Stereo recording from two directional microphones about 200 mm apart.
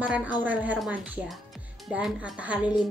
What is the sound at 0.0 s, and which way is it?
A woman's voice, 5° right (ahead or behind).